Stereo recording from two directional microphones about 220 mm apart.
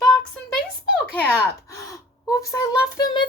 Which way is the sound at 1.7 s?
15° left (ahead or behind).